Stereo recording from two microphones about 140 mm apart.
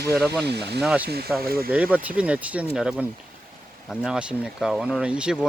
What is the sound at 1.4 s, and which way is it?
Speech, 90° right.